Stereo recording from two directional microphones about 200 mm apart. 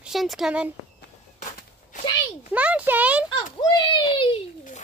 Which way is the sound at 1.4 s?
40° left (ahead or behind).